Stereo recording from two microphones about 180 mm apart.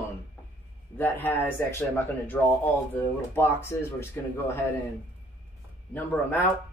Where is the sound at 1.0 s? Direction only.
10° left (ahead or behind).